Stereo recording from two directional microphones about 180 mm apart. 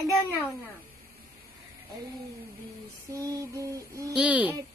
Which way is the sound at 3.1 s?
20° right (ahead or behind).